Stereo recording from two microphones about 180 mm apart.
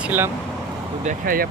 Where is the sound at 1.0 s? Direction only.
55° right (ahead or behind).